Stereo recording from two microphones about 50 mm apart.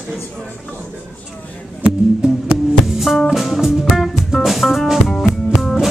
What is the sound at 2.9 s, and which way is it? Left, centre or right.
Music, centre.